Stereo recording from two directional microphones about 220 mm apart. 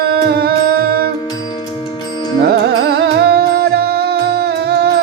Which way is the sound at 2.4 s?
50° right (ahead or behind).